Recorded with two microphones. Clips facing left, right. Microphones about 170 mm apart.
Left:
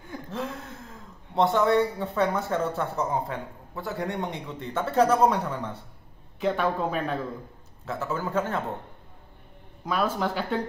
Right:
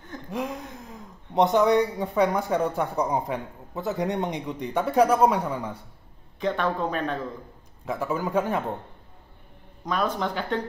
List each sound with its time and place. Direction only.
0.3 s speech: 15° right (ahead or behind)
6.4 s speech: 10° left (ahead or behind)
7.8 s a man's voice: 15° right (ahead or behind)
9.8 s speech: 5° left (ahead or behind)